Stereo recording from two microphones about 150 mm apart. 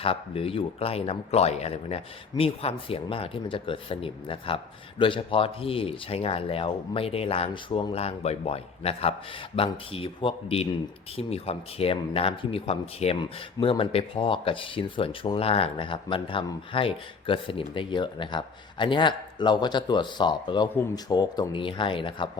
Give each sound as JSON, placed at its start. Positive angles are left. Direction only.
{"t": 0.0, "sound": "speech", "side_deg": 40}